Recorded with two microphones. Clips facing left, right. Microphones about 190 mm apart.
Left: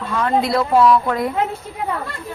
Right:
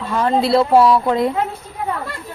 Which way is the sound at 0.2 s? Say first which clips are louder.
Right 3 dB; 30° right (ahead or behind).